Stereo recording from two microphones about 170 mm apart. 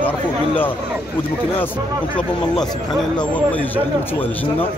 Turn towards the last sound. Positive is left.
turn(degrees=10)  # may be behind; listen again after turning